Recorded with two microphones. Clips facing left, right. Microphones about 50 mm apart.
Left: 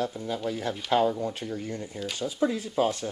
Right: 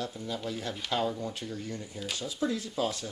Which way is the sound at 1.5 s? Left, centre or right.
Left.